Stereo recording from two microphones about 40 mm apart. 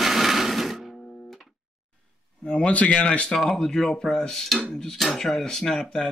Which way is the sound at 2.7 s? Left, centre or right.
Left.